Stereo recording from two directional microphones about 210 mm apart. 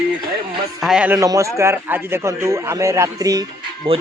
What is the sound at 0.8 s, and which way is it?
A man's voice, 5° right (ahead or behind).